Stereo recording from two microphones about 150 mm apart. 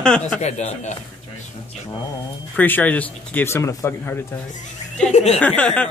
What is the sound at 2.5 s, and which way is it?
Speech, 10° left (ahead or behind).